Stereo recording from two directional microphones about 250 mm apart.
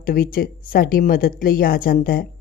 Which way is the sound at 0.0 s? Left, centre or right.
Left.